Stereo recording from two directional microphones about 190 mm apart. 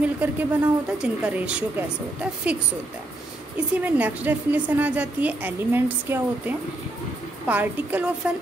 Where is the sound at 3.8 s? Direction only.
10° right (ahead or behind).